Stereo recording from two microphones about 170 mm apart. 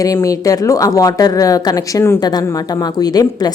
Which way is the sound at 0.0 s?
20° left (ahead or behind).